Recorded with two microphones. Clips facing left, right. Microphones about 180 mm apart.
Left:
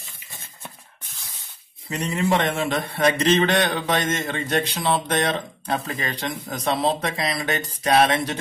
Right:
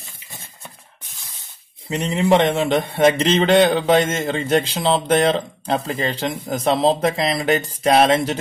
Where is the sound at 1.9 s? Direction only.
20° right (ahead or behind).